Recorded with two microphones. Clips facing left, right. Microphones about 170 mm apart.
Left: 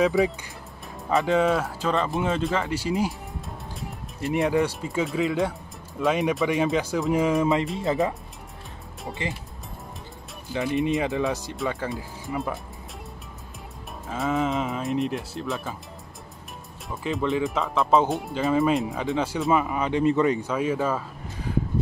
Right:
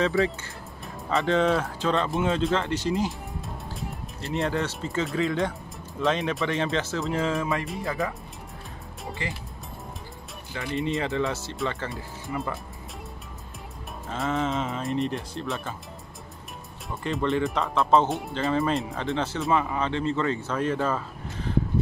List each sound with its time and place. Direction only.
1.0 s speech: 5° left (ahead or behind)
4.2 s speech: 10° left (ahead or behind)
10.5 s speech: 15° left (ahead or behind)
11.5 s speech: 5° left (ahead or behind)
14.0 s speech: centre (ahead or behind)
16.9 s speech: centre (ahead or behind)